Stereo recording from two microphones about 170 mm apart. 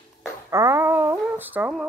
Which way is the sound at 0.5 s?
15° right (ahead or behind).